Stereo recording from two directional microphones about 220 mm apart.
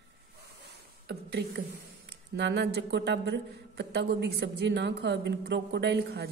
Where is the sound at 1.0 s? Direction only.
50° right (ahead or behind).